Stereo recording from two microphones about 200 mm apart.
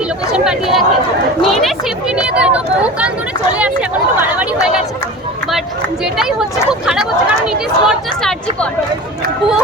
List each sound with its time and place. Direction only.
0.3 s speech: 5° right (ahead or behind)
6.8 s speech: 5° right (ahead or behind)